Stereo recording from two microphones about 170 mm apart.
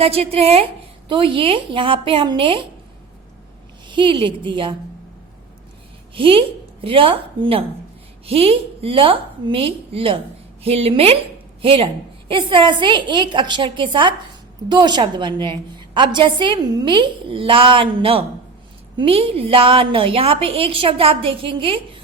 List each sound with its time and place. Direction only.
0.0 s a woman's voice: 35° right (ahead or behind)
3.8 s a woman's voice: 30° right (ahead or behind)
6.1 s a woman's voice: 30° right (ahead or behind)